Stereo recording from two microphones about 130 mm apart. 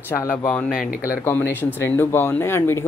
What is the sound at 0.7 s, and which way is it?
Speech, 90° left.